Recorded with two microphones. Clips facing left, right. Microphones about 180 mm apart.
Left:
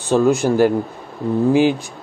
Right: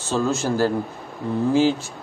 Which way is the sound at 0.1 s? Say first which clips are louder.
Left 7 dB; 15° left (ahead or behind).